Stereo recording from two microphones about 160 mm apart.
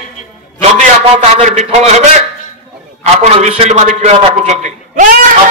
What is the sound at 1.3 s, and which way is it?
A man's voice, 45° right (ahead or behind).